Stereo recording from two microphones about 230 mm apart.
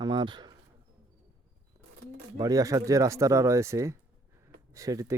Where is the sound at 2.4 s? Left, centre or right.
Centre.